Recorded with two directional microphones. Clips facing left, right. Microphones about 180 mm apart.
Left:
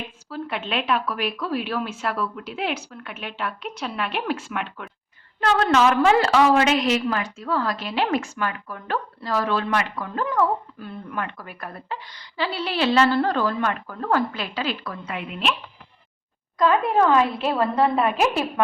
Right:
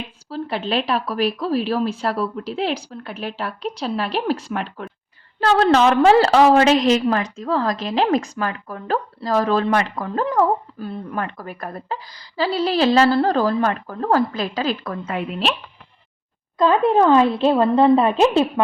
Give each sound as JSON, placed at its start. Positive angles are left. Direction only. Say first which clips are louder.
{"t": 0.3, "sound": "speech", "louder": "right 5 dB", "side_deg": -30}
{"t": 16.6, "sound": "a woman's voice", "louder": "right 4 dB", "side_deg": -30}